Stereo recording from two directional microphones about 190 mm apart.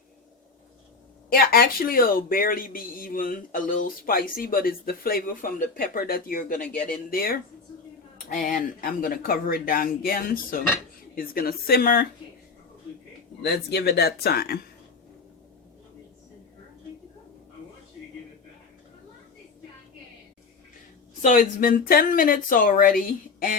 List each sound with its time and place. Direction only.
1.3 s speech: 50° left (ahead or behind)
13.4 s speech: 60° left (ahead or behind)
21.2 s speech: 45° left (ahead or behind)